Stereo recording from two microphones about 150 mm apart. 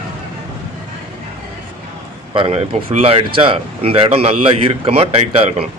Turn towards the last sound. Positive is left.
turn(degrees=-40)  # may be behind; listen again after turning